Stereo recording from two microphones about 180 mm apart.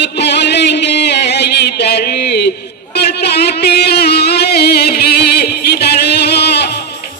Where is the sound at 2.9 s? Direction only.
65° left (ahead or behind).